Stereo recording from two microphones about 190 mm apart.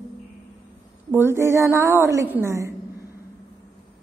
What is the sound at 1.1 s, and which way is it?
A woman's voice, 15° right (ahead or behind).